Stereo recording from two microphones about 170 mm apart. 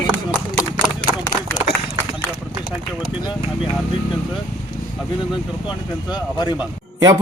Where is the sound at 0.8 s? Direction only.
10° left (ahead or behind).